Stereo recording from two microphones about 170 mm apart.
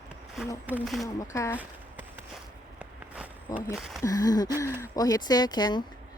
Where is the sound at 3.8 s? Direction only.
Centre (ahead or behind).